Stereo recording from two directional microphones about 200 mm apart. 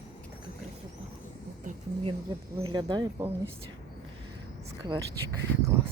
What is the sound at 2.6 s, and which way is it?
Speech, 25° right (ahead or behind).